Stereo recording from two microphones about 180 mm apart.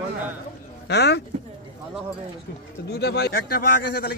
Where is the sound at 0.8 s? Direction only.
70° left (ahead or behind).